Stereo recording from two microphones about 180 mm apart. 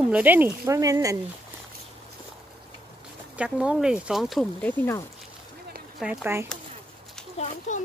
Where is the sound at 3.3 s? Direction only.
5° right (ahead or behind).